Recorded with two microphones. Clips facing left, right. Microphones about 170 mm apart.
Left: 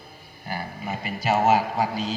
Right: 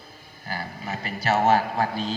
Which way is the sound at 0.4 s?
15° left (ahead or behind).